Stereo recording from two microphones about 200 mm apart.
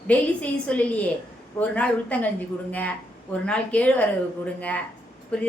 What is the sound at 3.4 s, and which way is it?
A woman's voice, 5° left (ahead or behind).